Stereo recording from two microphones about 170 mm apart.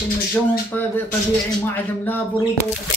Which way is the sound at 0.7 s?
10° left (ahead or behind).